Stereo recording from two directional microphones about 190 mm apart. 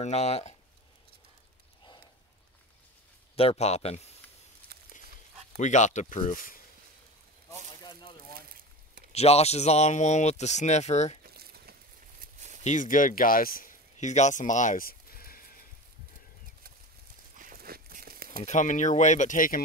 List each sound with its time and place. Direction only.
0.0 s speech: 35° left (ahead or behind)
3.3 s speech: 35° left (ahead or behind)
5.6 s speech: 40° left (ahead or behind)
9.1 s speech: 35° left (ahead or behind)
11.2 s a sound: 55° right (ahead or behind)
12.6 s speech: 40° left (ahead or behind)
17.4 s a sound: 50° right (ahead or behind)
18.4 s speech: 40° left (ahead or behind)